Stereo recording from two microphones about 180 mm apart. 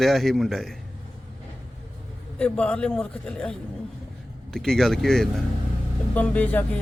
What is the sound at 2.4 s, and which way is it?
A man's voice, 5° left (ahead or behind).